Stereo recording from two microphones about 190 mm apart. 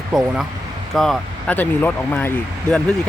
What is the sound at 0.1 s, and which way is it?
Speech, 5° right (ahead or behind).